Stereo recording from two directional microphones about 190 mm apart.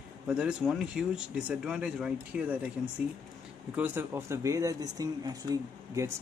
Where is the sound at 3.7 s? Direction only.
10° right (ahead or behind).